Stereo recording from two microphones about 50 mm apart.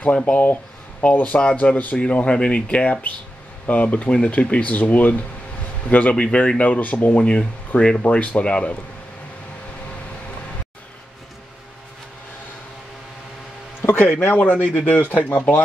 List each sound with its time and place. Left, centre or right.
0.0 s speech: left
14.2 s speech: left